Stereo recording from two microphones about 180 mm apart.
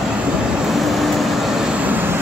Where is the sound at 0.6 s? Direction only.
Centre (ahead or behind).